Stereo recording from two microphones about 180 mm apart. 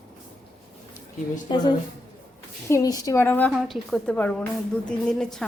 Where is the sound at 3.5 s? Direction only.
Centre (ahead or behind).